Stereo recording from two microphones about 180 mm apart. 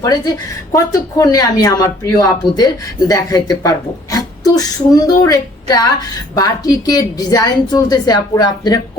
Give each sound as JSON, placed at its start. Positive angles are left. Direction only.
{"t": 0.7, "sound": "speech", "side_deg": 20}